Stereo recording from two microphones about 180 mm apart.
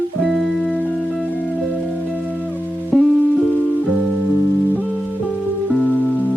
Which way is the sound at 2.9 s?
5° left (ahead or behind).